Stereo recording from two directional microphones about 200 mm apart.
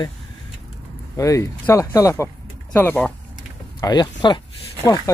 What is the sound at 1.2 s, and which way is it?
Speech, 15° left (ahead or behind).